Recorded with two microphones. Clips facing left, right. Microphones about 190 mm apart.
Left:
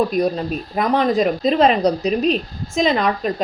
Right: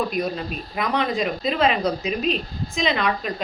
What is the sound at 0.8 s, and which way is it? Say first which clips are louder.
A woman's voice: left 6 dB; 40° left (ahead or behind).